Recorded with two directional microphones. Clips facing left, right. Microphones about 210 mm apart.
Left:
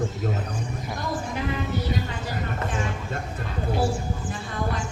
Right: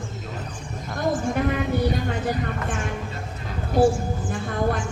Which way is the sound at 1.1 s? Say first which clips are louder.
Right 5 dB; 55° right (ahead or behind).